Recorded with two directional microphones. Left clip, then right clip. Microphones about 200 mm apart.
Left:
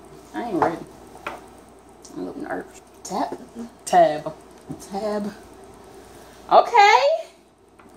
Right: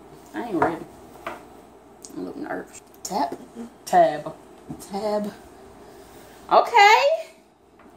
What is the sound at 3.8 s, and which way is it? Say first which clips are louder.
Speech: left 1 dB; 20° left (ahead or behind).